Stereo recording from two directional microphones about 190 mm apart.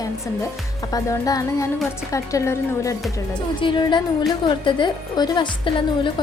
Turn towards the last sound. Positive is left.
turn(degrees=25)  # may be behind; listen again after turning